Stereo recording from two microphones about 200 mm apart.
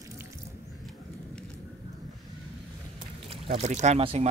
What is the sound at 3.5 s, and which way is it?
Speech, 35° right (ahead or behind).